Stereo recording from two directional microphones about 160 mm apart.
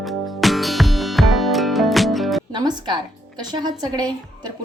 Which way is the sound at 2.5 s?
25° right (ahead or behind).